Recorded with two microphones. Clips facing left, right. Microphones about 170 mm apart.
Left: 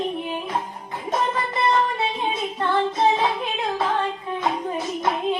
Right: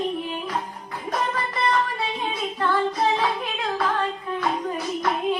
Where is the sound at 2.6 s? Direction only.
25° left (ahead or behind).